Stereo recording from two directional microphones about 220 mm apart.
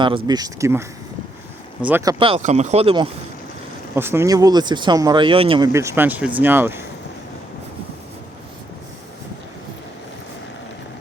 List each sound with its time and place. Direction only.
0.3 s speech: 15° right (ahead or behind)
3.9 s speech: 10° right (ahead or behind)